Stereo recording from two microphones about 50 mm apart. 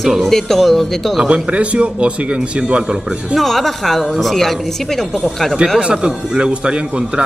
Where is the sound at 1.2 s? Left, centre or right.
Right.